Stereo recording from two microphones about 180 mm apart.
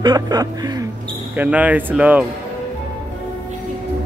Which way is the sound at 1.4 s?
10° right (ahead or behind).